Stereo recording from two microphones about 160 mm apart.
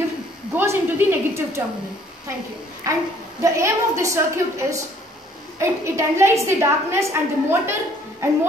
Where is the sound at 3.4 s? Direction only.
20° right (ahead or behind).